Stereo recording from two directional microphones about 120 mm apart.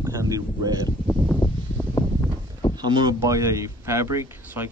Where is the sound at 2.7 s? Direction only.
35° right (ahead or behind).